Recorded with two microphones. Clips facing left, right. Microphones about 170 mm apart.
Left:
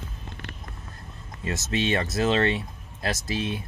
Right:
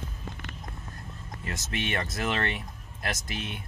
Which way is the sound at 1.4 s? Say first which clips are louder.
Left 7 dB; 25° left (ahead or behind).